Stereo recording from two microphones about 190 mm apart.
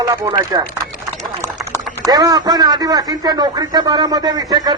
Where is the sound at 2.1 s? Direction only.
20° right (ahead or behind).